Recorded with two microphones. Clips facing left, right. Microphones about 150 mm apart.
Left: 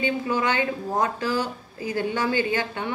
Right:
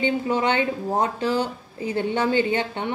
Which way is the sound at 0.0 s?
25° right (ahead or behind).